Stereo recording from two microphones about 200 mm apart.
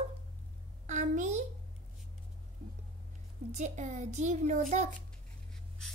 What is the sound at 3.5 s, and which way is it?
A child's voice, 35° right (ahead or behind).